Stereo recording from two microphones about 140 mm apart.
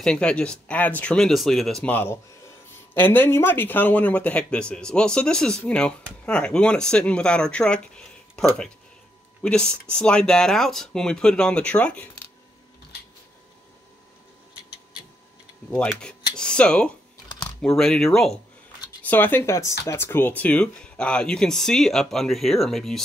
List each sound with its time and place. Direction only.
0.0 s speech: 5° left (ahead or behind)
9.4 s speech: 5° left (ahead or behind)
15.7 s speech: 5° left (ahead or behind)
19.0 s speech: 15° left (ahead or behind)